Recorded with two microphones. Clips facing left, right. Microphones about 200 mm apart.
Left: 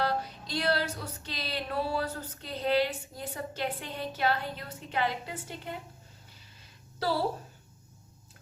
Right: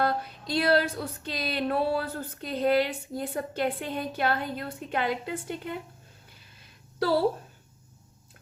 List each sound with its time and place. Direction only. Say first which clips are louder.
0.0 s music: right 3 dB; 55° right (ahead or behind)